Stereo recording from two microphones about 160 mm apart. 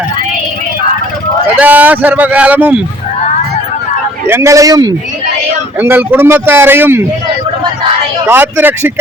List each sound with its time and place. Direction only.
1.5 s speech: 10° right (ahead or behind)
4.3 s speech: 15° right (ahead or behind)
5.8 s speech: 15° right (ahead or behind)
8.3 s speech: 15° right (ahead or behind)